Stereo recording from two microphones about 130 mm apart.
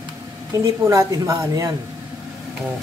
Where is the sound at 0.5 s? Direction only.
30° right (ahead or behind).